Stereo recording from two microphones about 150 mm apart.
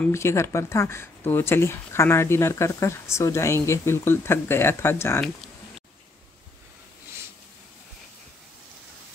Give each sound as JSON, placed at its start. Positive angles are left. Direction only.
{"t": 0.0, "sound": "speech", "side_deg": 20}